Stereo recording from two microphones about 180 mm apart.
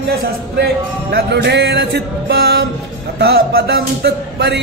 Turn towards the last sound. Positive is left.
turn(degrees=-65)  # may be behind; listen again after turning